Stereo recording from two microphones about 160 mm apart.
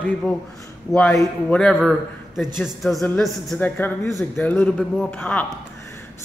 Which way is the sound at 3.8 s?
15° left (ahead or behind).